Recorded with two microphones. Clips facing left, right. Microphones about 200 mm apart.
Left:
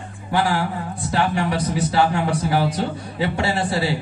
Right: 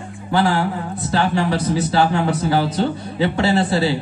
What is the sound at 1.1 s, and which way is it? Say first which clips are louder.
A man's voice: right 2 dB; 30° right (ahead or behind).